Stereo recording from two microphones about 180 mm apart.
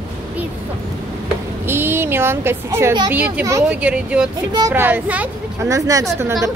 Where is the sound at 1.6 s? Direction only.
10° right (ahead or behind).